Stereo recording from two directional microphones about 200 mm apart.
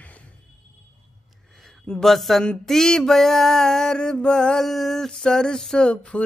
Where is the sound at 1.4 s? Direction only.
Centre (ahead or behind).